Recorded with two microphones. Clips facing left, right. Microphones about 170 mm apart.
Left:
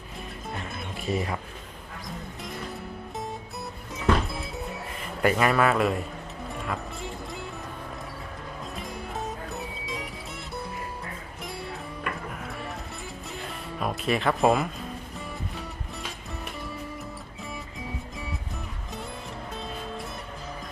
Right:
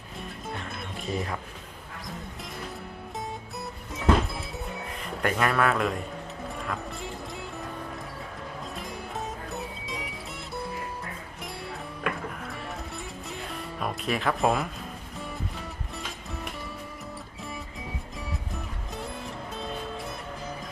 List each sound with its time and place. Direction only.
1.0 s a man's voice: centre (ahead or behind)
3.9 s music: centre (ahead or behind)
5.2 s a man's voice: 5° left (ahead or behind)
8.7 s music: centre (ahead or behind)
13.3 s music: centre (ahead or behind)